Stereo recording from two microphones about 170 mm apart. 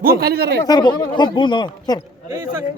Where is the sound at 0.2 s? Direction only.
70° right (ahead or behind).